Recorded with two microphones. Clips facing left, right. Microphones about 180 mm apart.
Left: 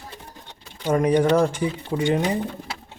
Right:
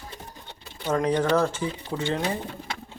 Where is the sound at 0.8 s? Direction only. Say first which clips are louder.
Left 5 dB; 15° left (ahead or behind).